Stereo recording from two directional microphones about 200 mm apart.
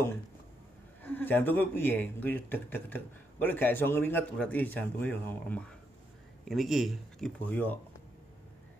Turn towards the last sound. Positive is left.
turn(degrees=10)  # may be behind; listen again after turning